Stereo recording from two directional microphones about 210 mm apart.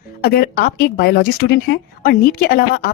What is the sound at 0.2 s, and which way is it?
A woman's voice, 50° left (ahead or behind).